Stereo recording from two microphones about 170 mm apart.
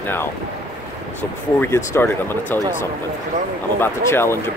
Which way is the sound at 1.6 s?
15° left (ahead or behind).